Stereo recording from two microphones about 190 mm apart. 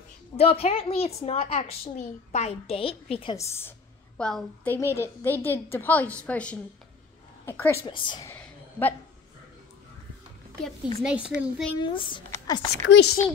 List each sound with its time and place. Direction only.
0.4 s a woman's voice: 30° left (ahead or behind)
3.3 s a woman's voice: 15° left (ahead or behind)
4.7 s a woman's voice: 15° left (ahead or behind)
7.8 s a woman's voice: 25° left (ahead or behind)
8.3 s a sound: 10° left (ahead or behind)
11.0 s speech: 5° right (ahead or behind)
11.8 s speech: 25° left (ahead or behind)
12.8 s speech: 70° left (ahead or behind)